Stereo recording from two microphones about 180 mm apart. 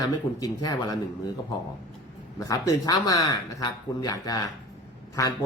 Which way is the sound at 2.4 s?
20° left (ahead or behind).